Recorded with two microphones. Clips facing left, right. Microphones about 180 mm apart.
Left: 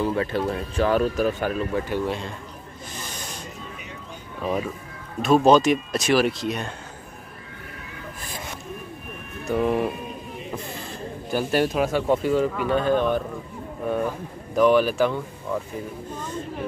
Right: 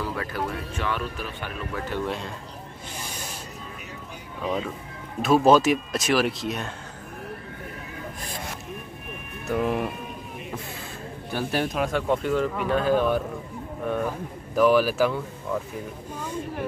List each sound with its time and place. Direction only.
0.0 s speech: 25° left (ahead or behind)
0.5 s speech: 35° left (ahead or behind)
2.0 s speech: centre (ahead or behind)
3.0 s snake: 10° right (ahead or behind)
4.4 s speech: 10° left (ahead or behind)
5.2 s speech: 5° right (ahead or behind)
9.5 s speech: centre (ahead or behind)
11.2 s speech: centre (ahead or behind)